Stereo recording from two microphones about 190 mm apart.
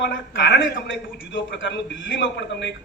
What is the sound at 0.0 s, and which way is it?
A man's voice, 70° left (ahead or behind).